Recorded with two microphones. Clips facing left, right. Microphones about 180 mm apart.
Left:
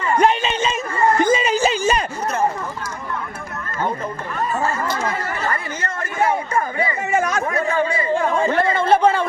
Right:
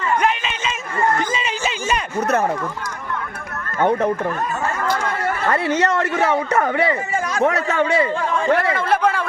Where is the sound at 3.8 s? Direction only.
70° right (ahead or behind).